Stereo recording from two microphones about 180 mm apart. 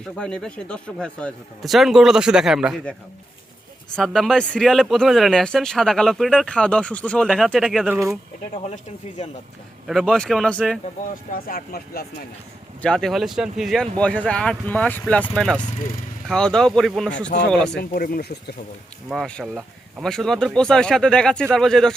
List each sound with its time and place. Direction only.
0.0 s speech: 5° left (ahead or behind)
3.9 s speech: centre (ahead or behind)
8.6 s speech: 40° left (ahead or behind)
9.8 s speech: centre (ahead or behind)
11.1 s speech: 50° left (ahead or behind)
12.8 s speech: 5° left (ahead or behind)
17.7 s speech: 55° left (ahead or behind)
19.0 s speech: centre (ahead or behind)